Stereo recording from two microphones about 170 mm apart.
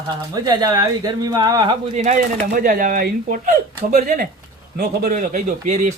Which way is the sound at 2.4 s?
60° right (ahead or behind).